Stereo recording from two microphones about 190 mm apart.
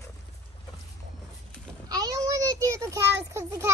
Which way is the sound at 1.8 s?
20° right (ahead or behind).